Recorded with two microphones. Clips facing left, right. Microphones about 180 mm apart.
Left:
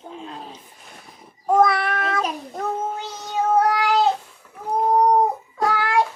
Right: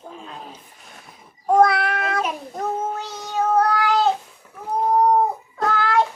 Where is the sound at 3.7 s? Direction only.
15° left (ahead or behind).